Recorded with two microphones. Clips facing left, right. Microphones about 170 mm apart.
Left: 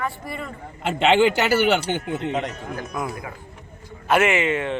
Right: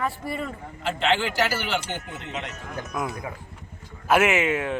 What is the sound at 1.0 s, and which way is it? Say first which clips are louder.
Speech: left 7 dB; 70° left (ahead or behind).